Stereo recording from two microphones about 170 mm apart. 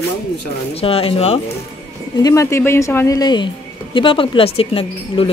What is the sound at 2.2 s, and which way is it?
A woman's voice, 15° left (ahead or behind).